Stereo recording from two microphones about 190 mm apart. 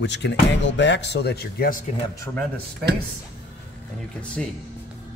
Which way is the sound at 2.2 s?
10° left (ahead or behind).